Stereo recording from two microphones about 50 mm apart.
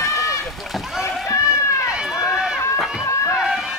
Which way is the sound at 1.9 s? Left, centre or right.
Centre.